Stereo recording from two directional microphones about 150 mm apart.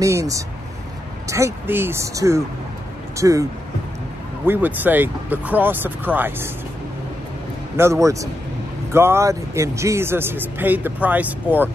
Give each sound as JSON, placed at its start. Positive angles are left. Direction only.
{"t": 0.0, "sound": "speech", "side_deg": -20}
{"t": 4.5, "sound": "speech", "side_deg": -10}
{"t": 7.7, "sound": "speech", "side_deg": -20}